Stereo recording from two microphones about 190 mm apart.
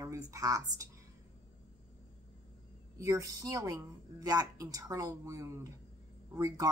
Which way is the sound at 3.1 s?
15° right (ahead or behind).